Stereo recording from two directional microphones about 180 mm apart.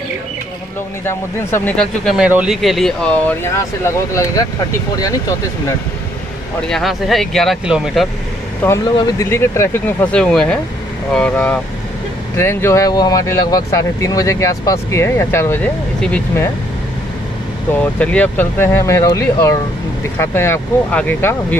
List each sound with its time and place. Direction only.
1.0 s a man's voice: 10° left (ahead or behind)
6.7 s a man's voice: centre (ahead or behind)
8.6 s speech: 15° left (ahead or behind)
17.6 s speech: 10° left (ahead or behind)